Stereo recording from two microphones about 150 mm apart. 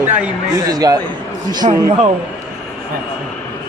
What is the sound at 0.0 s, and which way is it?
Speech, 20° right (ahead or behind).